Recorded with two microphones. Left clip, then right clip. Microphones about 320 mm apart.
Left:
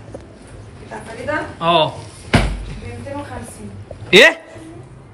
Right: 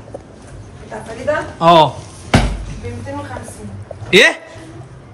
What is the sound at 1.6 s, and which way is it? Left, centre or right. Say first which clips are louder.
Speech: right 6 dB; centre.